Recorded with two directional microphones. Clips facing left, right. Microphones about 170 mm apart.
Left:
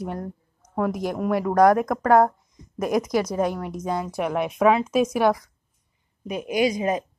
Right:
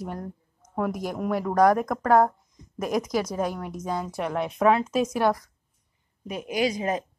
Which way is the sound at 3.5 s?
5° left (ahead or behind).